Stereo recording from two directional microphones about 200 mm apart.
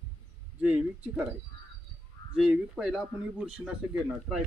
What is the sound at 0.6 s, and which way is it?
Speech, 5° right (ahead or behind).